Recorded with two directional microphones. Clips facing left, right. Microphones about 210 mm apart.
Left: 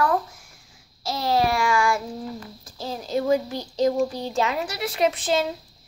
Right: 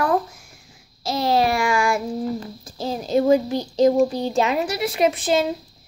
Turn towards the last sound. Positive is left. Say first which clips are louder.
# right 3 dB
turn(degrees=-10)  # may be behind; listen again after turning